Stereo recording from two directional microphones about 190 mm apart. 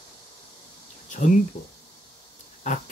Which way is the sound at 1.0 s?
45° left (ahead or behind).